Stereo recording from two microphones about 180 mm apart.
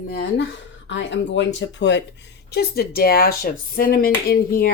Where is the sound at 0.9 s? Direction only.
90° left.